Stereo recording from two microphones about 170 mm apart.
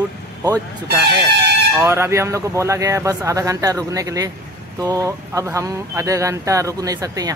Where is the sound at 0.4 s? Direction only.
20° right (ahead or behind).